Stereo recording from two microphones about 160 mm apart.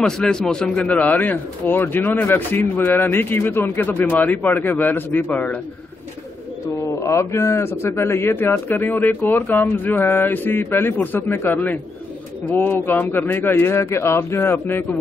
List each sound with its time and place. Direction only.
0.0 s speech: 5° left (ahead or behind)
6.8 s speech: 20° left (ahead or behind)